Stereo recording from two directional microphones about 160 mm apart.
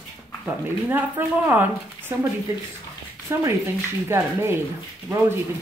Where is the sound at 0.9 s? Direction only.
15° right (ahead or behind).